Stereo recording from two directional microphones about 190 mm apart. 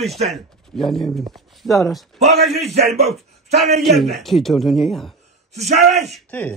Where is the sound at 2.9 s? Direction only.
35° right (ahead or behind).